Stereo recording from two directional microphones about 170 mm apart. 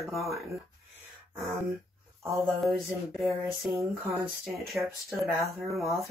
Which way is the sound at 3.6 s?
5° right (ahead or behind).